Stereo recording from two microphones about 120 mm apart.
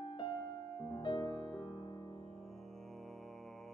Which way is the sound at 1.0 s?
35° left (ahead or behind).